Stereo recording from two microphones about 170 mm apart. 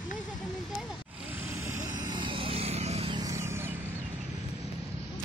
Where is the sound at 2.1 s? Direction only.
30° right (ahead or behind).